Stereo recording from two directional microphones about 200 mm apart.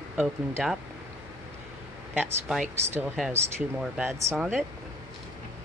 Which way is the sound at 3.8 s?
10° right (ahead or behind).